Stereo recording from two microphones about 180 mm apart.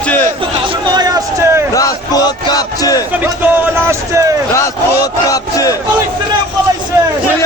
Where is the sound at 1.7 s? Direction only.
20° left (ahead or behind).